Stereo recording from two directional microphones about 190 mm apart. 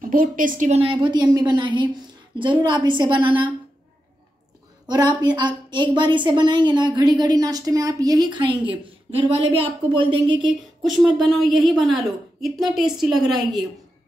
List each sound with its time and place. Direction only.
0.1 s a woman's voice: 45° right (ahead or behind); by 3.5 s 25° right (ahead or behind)
4.8 s a woman's voice: 20° right (ahead or behind)
10.8 s a woman's voice: centre (ahead or behind)